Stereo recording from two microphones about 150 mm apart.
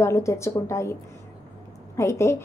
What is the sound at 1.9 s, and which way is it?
Speech, 20° left (ahead or behind).